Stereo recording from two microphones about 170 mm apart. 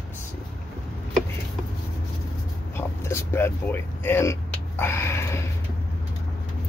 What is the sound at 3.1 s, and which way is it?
Speech, 15° left (ahead or behind).